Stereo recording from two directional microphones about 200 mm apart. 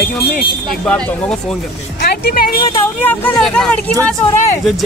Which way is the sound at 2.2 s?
45° left (ahead or behind).